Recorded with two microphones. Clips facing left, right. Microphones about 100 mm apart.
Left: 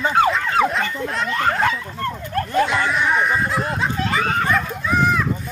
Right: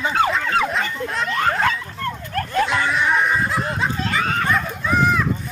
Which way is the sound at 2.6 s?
Centre (ahead or behind).